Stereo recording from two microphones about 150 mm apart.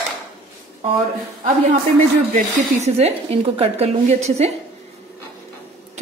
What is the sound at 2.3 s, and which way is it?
Speech, 45° right (ahead or behind).